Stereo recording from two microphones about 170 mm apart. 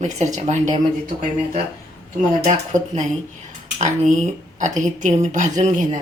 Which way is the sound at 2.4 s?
45° right (ahead or behind).